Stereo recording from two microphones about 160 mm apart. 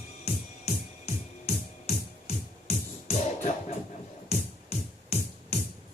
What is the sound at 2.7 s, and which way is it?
Music, 45° left (ahead or behind).